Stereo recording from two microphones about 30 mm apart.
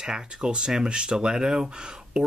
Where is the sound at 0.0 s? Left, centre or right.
Right.